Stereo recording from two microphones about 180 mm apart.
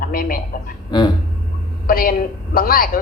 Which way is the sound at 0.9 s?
25° left (ahead or behind).